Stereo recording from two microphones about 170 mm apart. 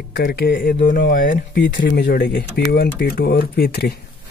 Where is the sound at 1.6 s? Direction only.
90° left; by 4.0 s 70° left (ahead or behind).